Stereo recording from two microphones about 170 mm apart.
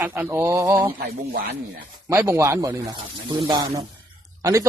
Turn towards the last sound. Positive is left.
turn(degrees=-20)  # may be behind; listen again after turning